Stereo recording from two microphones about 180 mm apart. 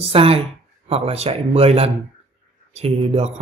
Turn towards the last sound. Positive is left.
turn(degrees=-35)  # may be behind; listen again after turning